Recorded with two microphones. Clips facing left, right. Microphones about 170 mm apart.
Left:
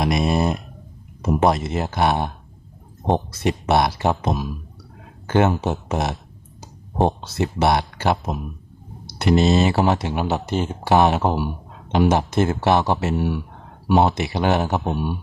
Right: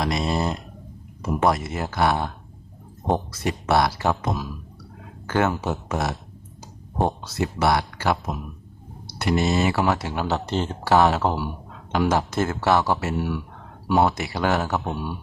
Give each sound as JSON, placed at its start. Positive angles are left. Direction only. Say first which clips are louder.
{"t": 0.0, "sound": "a sound", "louder": "left 4 dB", "side_deg": 20}
{"t": 1.2, "sound": "speech", "louder": "left 3 dB", "side_deg": 25}
{"t": 3.3, "sound": "speech", "louder": "left 2 dB", "side_deg": 20}
{"t": 7.2, "sound": "speech", "louder": "left 3 dB", "side_deg": 25}